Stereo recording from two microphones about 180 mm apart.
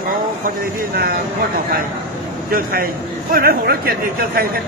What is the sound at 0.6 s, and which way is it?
Speech, 55° right (ahead or behind).